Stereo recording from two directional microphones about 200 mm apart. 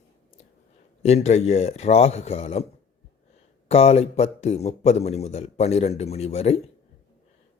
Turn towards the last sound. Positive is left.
turn(degrees=30)  # may be behind; listen again after turning